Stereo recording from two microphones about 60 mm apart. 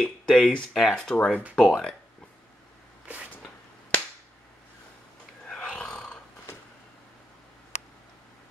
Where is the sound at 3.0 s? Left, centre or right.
Centre.